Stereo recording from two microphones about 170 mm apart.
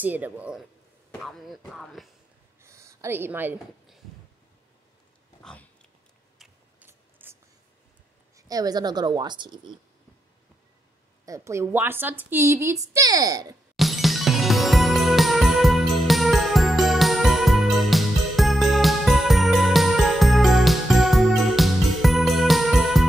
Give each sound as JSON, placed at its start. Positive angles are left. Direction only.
{"t": 0.0, "sound": "speech", "side_deg": -10}
{"t": 2.6, "sound": "a sound", "side_deg": -15}
{"t": 5.4, "sound": "pig", "side_deg": 5}
{"t": 6.3, "sound": "a sound", "side_deg": 0}
{"t": 6.9, "sound": "writing", "side_deg": -15}
{"t": 8.4, "sound": "a woman's voice", "side_deg": -20}
{"t": 11.2, "sound": "a woman's voice", "side_deg": -15}
{"t": 13.7, "sound": "music", "side_deg": 0}